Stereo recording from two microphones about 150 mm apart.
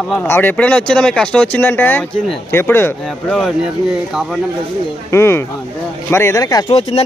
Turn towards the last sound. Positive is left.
turn(degrees=40)  # may be behind; listen again after turning